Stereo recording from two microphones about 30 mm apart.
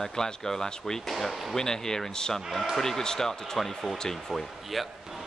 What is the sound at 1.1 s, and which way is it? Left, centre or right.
Speech, centre.